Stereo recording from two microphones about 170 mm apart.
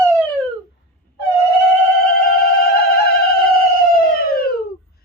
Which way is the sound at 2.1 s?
65° left (ahead or behind).